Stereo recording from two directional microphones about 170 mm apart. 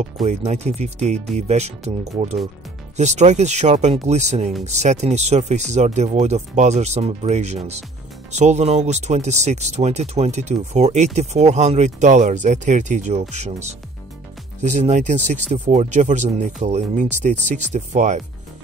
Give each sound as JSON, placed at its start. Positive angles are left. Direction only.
{"t": 0.3, "sound": "speech", "side_deg": -40}
{"t": 3.0, "sound": "speech", "side_deg": -45}